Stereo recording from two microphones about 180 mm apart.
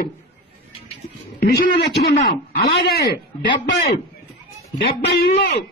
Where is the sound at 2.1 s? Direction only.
60° left (ahead or behind).